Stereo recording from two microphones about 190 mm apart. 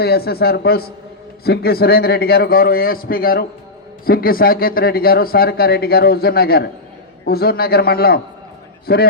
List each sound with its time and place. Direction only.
0.0 s a man's voice: 55° left (ahead or behind)